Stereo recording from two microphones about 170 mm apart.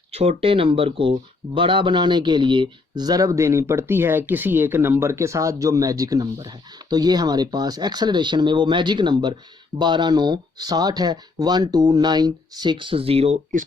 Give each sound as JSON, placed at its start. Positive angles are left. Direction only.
{"t": 0.1, "sound": "speech", "side_deg": -35}